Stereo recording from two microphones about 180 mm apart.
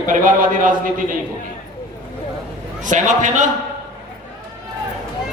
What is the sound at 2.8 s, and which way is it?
Speech, 45° right (ahead or behind).